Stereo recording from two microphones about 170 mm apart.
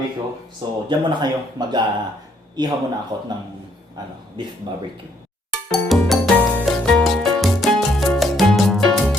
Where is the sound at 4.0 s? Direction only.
25° right (ahead or behind).